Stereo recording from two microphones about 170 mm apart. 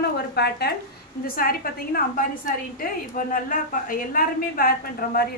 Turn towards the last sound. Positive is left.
turn(degrees=60)  # may be behind; listen again after turning